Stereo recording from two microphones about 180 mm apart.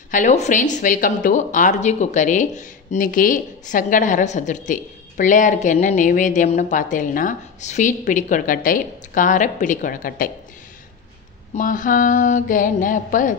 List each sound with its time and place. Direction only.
0.1 s speech: 40° left (ahead or behind)
11.5 s speech: 45° left (ahead or behind)